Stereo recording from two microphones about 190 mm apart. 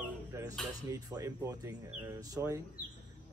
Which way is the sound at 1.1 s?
20° right (ahead or behind).